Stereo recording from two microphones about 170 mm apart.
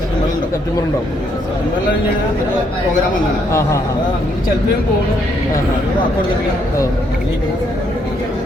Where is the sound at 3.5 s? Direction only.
15° left (ahead or behind).